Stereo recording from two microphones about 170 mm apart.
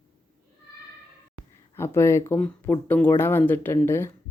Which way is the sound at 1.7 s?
15° left (ahead or behind).